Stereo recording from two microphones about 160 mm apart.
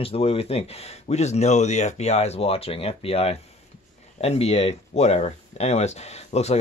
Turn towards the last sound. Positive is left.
turn(degrees=40)  # may be behind; listen again after turning